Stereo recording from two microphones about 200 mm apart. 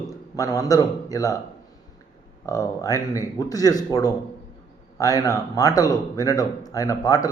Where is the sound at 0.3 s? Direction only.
15° left (ahead or behind).